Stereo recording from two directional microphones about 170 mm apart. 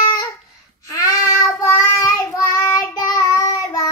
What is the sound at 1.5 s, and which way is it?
Child singing, 15° left (ahead or behind).